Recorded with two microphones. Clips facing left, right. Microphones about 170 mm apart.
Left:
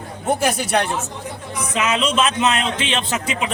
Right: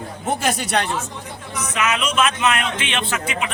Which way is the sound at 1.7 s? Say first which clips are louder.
Left 2 dB; 30° left (ahead or behind).